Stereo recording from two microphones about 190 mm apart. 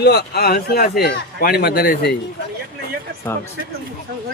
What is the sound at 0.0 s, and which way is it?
A man's voice, 60° left (ahead or behind).